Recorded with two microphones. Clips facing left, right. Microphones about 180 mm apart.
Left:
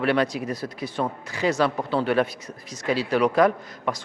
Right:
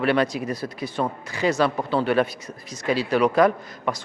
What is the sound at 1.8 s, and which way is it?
Speech, 25° right (ahead or behind).